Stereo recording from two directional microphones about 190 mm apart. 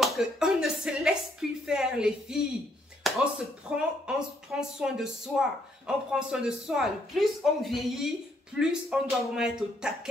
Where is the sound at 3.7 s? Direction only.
5° right (ahead or behind).